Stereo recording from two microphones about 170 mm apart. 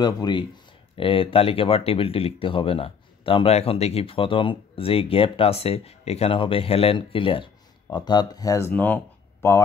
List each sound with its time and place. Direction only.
0.0 s speech: 25° left (ahead or behind)